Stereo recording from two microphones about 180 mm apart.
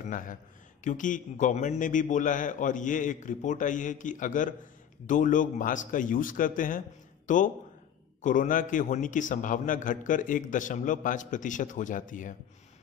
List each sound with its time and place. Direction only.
0.0 s a man's voice: 50° left (ahead or behind)